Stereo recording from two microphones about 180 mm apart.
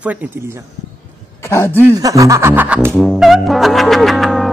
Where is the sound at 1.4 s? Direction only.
15° left (ahead or behind).